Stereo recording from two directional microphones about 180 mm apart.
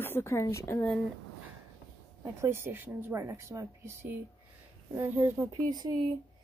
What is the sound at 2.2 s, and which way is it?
Speech, 15° right (ahead or behind).